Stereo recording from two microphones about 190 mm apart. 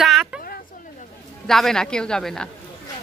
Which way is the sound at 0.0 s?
5° right (ahead or behind).